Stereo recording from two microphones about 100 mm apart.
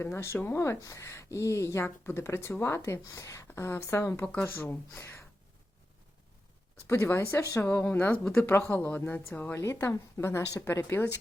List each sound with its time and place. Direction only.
0.0 s speech: 25° left (ahead or behind)
6.8 s speech: 25° left (ahead or behind)